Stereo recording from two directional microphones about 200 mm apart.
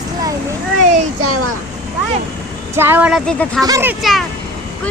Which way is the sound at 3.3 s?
5° left (ahead or behind).